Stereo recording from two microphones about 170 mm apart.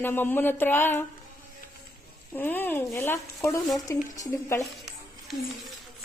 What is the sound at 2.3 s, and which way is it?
Speech, 10° left (ahead or behind).